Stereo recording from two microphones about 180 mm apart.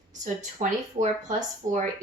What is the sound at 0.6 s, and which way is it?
Speech, 40° right (ahead or behind).